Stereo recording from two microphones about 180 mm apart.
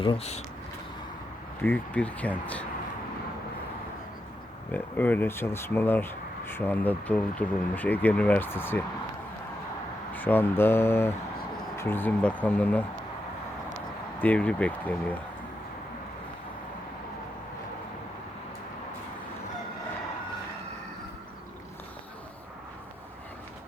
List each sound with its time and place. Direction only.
0.0 s speech: 30° left (ahead or behind)
1.6 s speech: 10° left (ahead or behind)
4.7 s speech: 10° left (ahead or behind)
10.2 s speech: 10° left (ahead or behind)
14.2 s speech: 10° left (ahead or behind)